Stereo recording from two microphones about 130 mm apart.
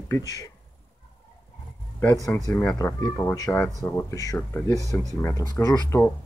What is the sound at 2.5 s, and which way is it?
Speech, 10° left (ahead or behind).